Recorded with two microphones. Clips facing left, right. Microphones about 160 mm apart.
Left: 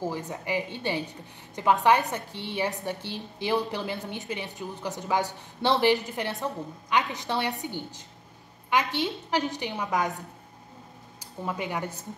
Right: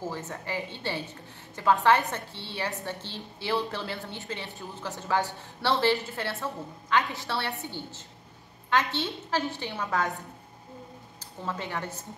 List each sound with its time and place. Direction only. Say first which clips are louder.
0.0 s a woman's voice: left 3 dB; 15° left (ahead or behind)
11.4 s a woman's voice: left 2 dB; 15° left (ahead or behind)